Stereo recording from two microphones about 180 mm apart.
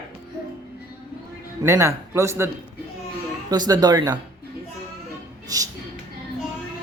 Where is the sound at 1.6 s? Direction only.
15° right (ahead or behind).